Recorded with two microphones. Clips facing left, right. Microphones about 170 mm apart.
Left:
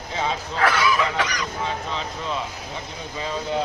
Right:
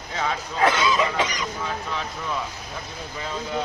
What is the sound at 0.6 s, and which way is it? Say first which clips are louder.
Goose: right 1 dB; 20° right (ahead or behind).